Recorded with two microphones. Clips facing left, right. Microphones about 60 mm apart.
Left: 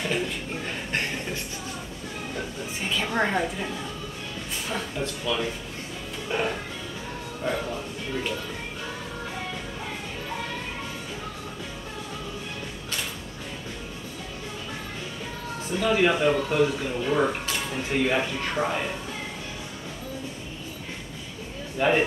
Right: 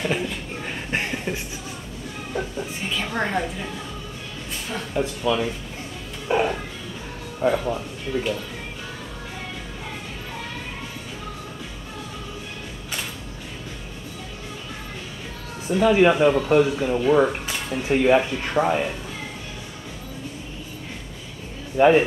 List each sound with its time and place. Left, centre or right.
0.0 s chuckle: centre
0.7 s speech: centre
2.3 s speech: centre
4.9 s speech: centre
15.7 s speech: centre
17.6 s a sound: centre
17.8 s speech: centre
21.8 s speech: centre